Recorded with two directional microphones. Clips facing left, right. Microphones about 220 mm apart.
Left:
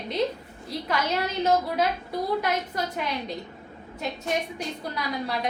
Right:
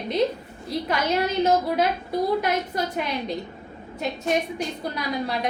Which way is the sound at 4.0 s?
15° right (ahead or behind).